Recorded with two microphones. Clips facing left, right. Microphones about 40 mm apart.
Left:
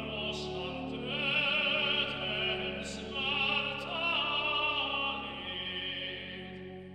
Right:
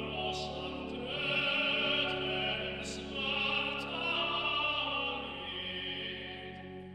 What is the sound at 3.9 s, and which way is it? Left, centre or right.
Opera, centre.